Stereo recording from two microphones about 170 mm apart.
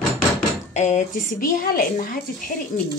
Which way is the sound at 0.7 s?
45° left (ahead or behind).